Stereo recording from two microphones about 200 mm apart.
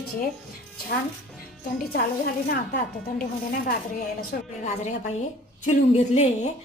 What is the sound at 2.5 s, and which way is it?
Speech, 45° left (ahead or behind).